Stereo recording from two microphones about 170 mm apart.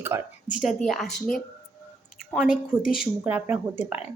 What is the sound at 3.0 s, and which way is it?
Speech, 10° right (ahead or behind).